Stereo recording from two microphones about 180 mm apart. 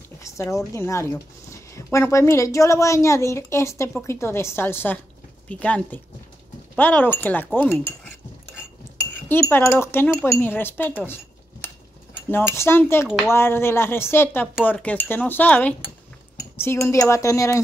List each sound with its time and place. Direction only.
0.2 s a woman's voice: 15° left (ahead or behind)
9.3 s a woman's voice: 15° left (ahead or behind)
12.3 s a woman's voice: 15° left (ahead or behind)